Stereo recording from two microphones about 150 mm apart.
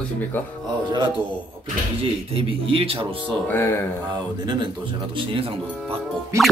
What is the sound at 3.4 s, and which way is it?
Music, 15° left (ahead or behind).